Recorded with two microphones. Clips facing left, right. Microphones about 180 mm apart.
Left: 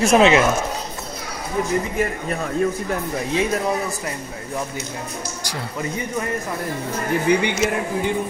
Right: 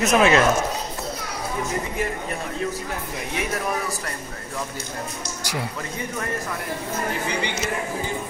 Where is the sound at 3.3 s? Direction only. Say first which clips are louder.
Left 5 dB; 25° left (ahead or behind).